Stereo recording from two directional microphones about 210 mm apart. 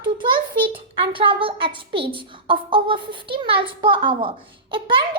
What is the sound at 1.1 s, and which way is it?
A woman's voice, 25° right (ahead or behind).